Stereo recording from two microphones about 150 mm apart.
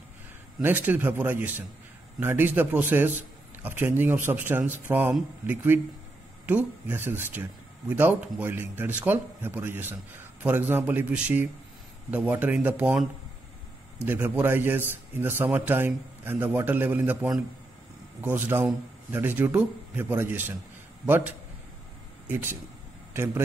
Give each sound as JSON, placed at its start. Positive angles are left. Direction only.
{"t": 0.6, "sound": "a man's voice", "side_deg": -15}
{"t": 14.0, "sound": "a man's voice", "side_deg": -15}